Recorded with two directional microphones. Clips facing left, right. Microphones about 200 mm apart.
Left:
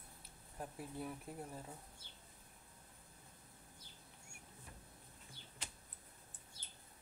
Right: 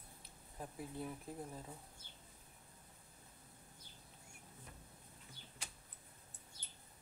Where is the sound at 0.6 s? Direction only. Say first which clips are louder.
Even; centre (ahead or behind).